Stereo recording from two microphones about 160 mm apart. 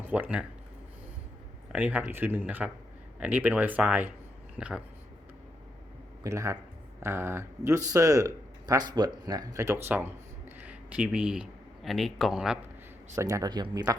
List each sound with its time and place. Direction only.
0.1 s speech: 10° right (ahead or behind)
1.7 s speech: 10° right (ahead or behind)
6.2 s speech: 20° right (ahead or behind)
13.1 s speech: 20° right (ahead or behind)